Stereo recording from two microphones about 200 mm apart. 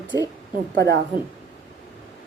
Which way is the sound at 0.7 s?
60° right (ahead or behind).